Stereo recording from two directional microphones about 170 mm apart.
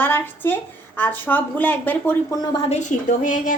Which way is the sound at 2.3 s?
25° left (ahead or behind).